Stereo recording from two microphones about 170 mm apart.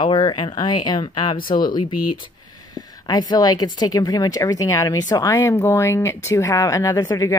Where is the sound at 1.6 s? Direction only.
55° left (ahead or behind).